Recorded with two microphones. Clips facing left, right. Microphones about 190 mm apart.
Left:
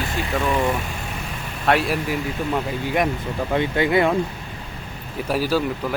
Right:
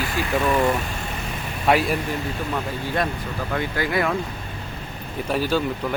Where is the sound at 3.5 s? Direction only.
25° left (ahead or behind).